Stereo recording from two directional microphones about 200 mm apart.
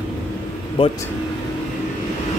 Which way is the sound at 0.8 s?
25° left (ahead or behind).